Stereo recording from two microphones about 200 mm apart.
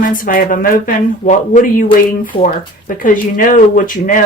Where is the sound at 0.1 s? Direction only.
45° left (ahead or behind).